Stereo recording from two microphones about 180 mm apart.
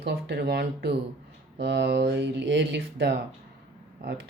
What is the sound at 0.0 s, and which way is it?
Speech, 70° right (ahead or behind).